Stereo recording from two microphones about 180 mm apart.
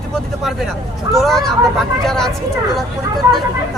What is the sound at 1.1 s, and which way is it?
Speech, centre (ahead or behind).